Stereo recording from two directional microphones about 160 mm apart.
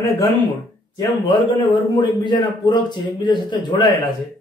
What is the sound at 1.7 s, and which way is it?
A man's voice, 30° left (ahead or behind).